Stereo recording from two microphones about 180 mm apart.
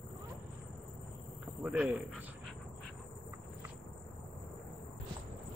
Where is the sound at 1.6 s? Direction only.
10° right (ahead or behind).